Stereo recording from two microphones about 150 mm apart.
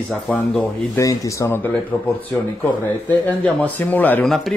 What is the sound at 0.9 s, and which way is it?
Speech, 20° left (ahead or behind).